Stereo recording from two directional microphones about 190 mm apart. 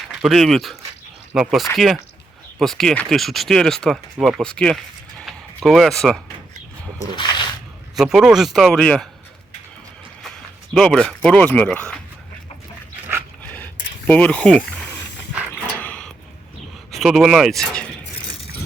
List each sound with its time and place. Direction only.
0.1 s speech: centre (ahead or behind)
7.2 s a sound: 25° left (ahead or behind)
7.9 s speech: centre (ahead or behind)
10.8 s speech: 5° left (ahead or behind)
13.4 s dog: 10° left (ahead or behind)
14.1 s speech: 5° left (ahead or behind)
15.8 s a sound: 5° left (ahead or behind)
16.9 s speech: centre (ahead or behind)